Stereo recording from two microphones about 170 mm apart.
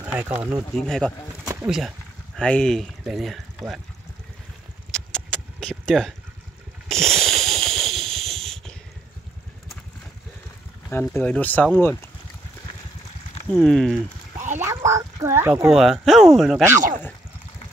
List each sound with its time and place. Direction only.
0.0 s speech: 10° right (ahead or behind)
0.7 s speech: 5° left (ahead or behind)
1.4 s bird: 15° right (ahead or behind)
1.7 s speech: centre (ahead or behind)
4.9 s a sound: 5° left (ahead or behind)
10.9 s speech: 10° left (ahead or behind)
13.5 s speech: 5° left (ahead or behind)
14.6 s a sound: 15° right (ahead or behind)
15.7 s speech: centre (ahead or behind)